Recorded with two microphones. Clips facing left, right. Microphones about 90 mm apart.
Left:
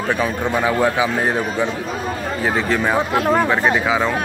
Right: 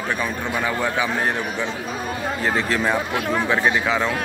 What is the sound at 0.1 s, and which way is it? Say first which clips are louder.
A man's voice: left 6 dB; 15° left (ahead or behind).